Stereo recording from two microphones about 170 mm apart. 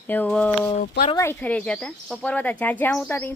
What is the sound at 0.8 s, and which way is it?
Speech, 50° left (ahead or behind).